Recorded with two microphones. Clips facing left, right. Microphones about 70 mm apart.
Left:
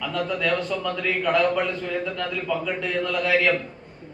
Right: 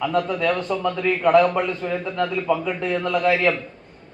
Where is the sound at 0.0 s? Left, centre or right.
Right.